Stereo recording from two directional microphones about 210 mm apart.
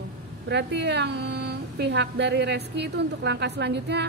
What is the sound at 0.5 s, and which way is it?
A woman's voice, 55° right (ahead or behind).